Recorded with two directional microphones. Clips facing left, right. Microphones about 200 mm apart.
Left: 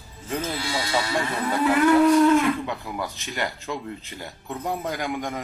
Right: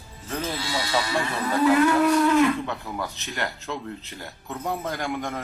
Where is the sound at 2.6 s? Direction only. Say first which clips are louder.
Left 1 dB; 10° left (ahead or behind).